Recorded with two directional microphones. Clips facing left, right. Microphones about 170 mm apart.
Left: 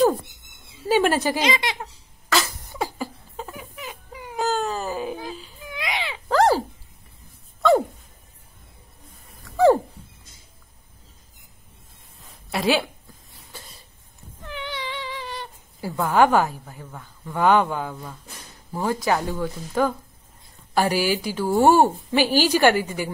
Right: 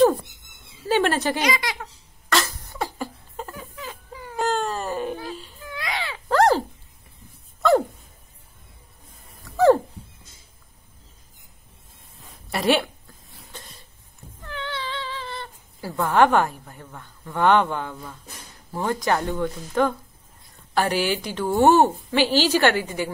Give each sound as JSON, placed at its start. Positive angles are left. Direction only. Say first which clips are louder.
{"t": 0.8, "sound": "speech", "louder": "left 1 dB", "side_deg": 10}
{"t": 1.4, "sound": "speech", "louder": "left 1 dB", "side_deg": 25}
{"t": 2.2, "sound": "cough", "louder": "even", "side_deg": 5}
{"t": 2.5, "sound": "a sound", "louder": "left 1 dB", "side_deg": 15}
{"t": 3.0, "sound": "a sound", "louder": "even", "side_deg": 0}
{"t": 3.5, "sound": "wail", "louder": "even", "side_deg": 15}
{"t": 4.4, "sound": "baby cry", "louder": "even", "side_deg": 0}
{"t": 5.6, "sound": "baby cry", "louder": "left 2 dB", "side_deg": 15}
{"t": 6.2, "sound": "dog", "louder": "even", "side_deg": 0}
{"t": 12.4, "sound": "a sound", "louder": "right 1 dB", "side_deg": 0}
{"t": 13.5, "sound": "cough", "louder": "right 1 dB", "side_deg": 10}
{"t": 14.4, "sound": "cat", "louder": "even", "side_deg": 15}
{"t": 16.0, "sound": "a woman's voice", "louder": "even", "side_deg": 5}